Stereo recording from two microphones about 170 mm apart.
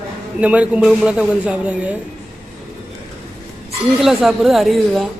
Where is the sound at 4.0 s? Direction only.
Centre (ahead or behind).